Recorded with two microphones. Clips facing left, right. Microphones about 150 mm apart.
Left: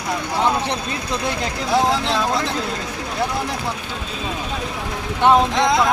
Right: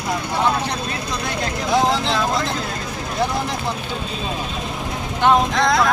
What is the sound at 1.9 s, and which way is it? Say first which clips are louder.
Speech: even; centre (ahead or behind).